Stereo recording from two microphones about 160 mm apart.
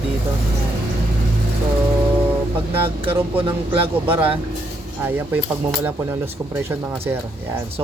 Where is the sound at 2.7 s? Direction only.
35° right (ahead or behind).